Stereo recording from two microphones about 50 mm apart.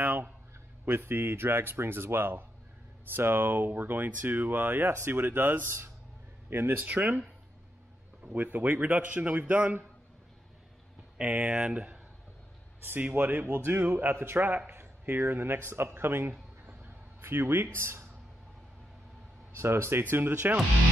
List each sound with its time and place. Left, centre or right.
0.0 s a sound: right
0.8 s speech: right
8.2 s a man's voice: right
11.1 s a man's voice: right
13.1 s speech: right
14.7 s speech: right
17.7 s speech: right
19.5 s speech: right
20.0 s speech: right